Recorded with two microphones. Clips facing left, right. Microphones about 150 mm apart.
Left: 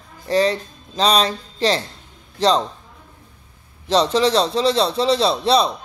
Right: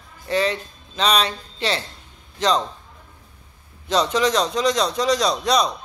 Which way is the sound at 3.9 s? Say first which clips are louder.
Left 3 dB; 35° left (ahead or behind).